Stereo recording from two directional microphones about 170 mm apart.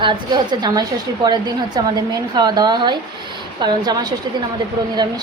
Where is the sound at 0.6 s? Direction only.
25° right (ahead or behind).